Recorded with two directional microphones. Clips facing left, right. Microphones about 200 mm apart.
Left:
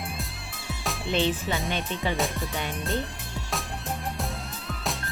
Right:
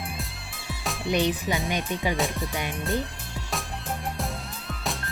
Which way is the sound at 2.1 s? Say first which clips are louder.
Right 1 dB; centre (ahead or behind).